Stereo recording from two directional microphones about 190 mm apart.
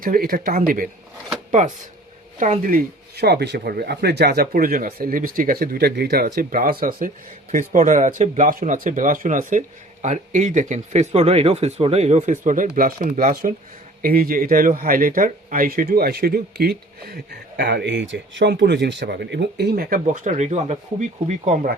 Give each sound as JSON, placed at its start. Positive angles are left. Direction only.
{"t": 0.0, "sound": "speech", "side_deg": -50}